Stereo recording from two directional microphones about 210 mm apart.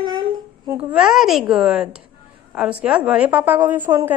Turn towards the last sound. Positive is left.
turn(degrees=-10)  # may be behind; listen again after turning